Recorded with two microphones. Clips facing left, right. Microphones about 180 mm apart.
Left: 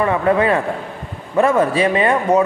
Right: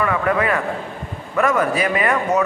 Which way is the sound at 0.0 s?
30° left (ahead or behind).